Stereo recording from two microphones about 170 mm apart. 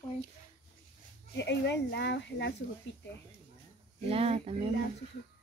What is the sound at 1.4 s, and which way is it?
Speech, 90° left.